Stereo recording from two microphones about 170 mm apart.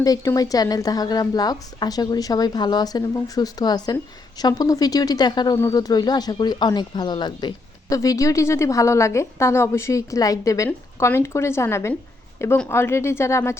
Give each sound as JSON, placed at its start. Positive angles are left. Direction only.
{"t": 0.0, "sound": "speech", "side_deg": 20}